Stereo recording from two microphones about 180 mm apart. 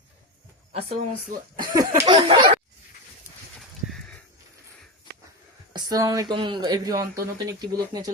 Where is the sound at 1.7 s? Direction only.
20° right (ahead or behind).